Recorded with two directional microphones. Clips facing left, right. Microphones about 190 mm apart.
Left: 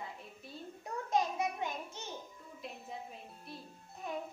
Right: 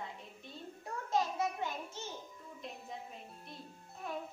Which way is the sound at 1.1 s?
15° left (ahead or behind).